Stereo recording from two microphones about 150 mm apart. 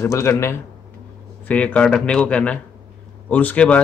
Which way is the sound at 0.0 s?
20° left (ahead or behind).